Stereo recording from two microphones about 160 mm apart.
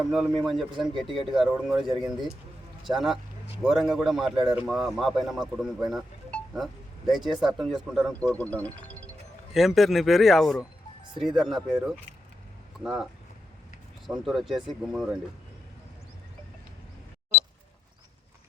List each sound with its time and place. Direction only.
0.1 s a man's voice: centre (ahead or behind)
9.5 s a man's voice: centre (ahead or behind)
14.1 s a man's voice: centre (ahead or behind)